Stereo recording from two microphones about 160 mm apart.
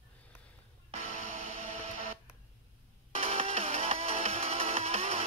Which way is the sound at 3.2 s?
40° right (ahead or behind).